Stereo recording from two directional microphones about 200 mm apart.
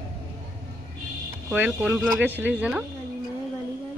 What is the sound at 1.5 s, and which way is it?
A woman's voice, 5° right (ahead or behind).